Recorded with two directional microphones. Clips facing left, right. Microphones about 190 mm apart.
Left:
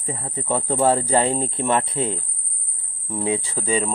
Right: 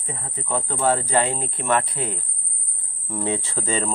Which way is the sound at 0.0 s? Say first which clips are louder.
Left 4 dB; 30° left (ahead or behind).